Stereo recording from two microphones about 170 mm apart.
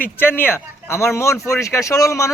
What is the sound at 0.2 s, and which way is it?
A man's voice, 10° left (ahead or behind).